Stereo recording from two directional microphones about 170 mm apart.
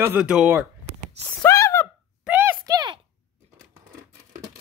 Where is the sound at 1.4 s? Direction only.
15° left (ahead or behind).